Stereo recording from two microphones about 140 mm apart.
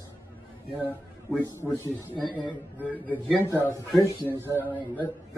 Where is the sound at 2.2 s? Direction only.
35° left (ahead or behind).